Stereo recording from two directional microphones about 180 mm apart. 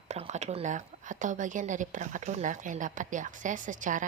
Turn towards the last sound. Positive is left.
turn(degrees=-45)  # may be behind; listen again after turning